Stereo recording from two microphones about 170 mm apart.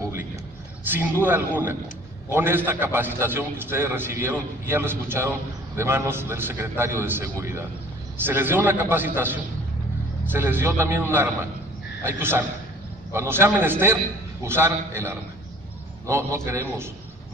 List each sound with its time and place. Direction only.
0.8 s a man's voice: 10° right (ahead or behind)